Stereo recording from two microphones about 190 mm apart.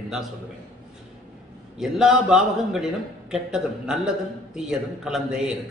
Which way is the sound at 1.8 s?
5° right (ahead or behind).